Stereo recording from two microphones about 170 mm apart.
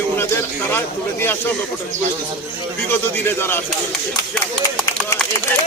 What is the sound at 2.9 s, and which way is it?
Speech, 10° left (ahead or behind).